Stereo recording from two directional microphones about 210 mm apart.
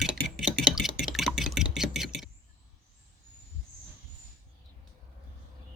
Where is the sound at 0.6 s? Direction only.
Centre (ahead or behind).